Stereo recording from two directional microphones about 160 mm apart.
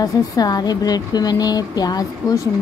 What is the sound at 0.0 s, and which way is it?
A woman's voice, 25° left (ahead or behind).